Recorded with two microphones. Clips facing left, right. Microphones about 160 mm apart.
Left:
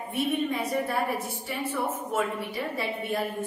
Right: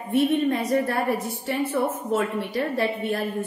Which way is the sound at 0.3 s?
70° right (ahead or behind).